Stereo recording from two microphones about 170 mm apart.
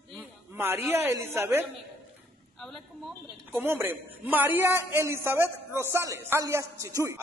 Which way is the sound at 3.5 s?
10° right (ahead or behind).